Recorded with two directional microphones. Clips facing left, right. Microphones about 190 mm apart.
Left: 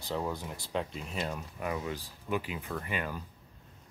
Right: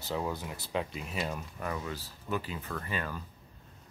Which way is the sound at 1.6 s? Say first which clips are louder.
Left 4 dB; 15° left (ahead or behind).